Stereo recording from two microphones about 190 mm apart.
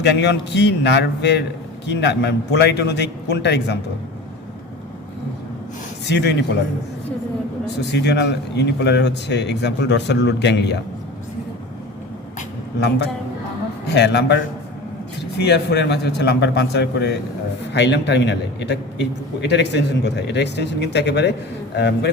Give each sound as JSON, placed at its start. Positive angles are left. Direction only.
{"t": 0.0, "sound": "a man's voice", "side_deg": 65}
{"t": 6.1, "sound": "a man's voice", "side_deg": 65}
{"t": 7.8, "sound": "a man's voice", "side_deg": 65}
{"t": 13.8, "sound": "a man's voice", "side_deg": 60}